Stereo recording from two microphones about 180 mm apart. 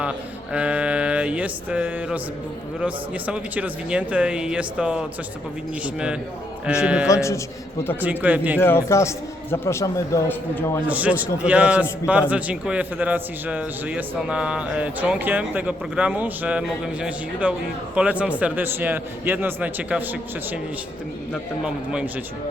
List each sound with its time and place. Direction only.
0.5 s a man's voice: 5° right (ahead or behind)
7.1 s a man's voice: 15° left (ahead or behind)
8.0 s a man's voice: 10° right (ahead or behind)
8.5 s a man's voice: 10° left (ahead or behind)
10.8 s a man's voice: 10° right (ahead or behind)
21.6 s a man's voice: 5° right (ahead or behind)